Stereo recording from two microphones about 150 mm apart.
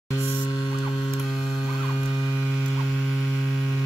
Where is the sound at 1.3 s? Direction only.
Centre (ahead or behind).